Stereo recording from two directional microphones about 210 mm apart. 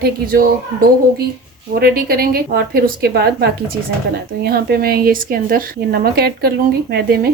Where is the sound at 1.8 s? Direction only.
45° right (ahead or behind).